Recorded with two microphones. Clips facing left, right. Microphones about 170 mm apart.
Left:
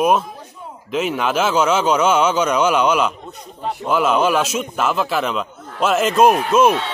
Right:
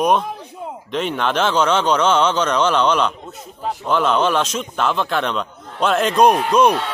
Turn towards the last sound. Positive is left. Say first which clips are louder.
# even
turn(degrees=5)  # may be behind; listen again after turning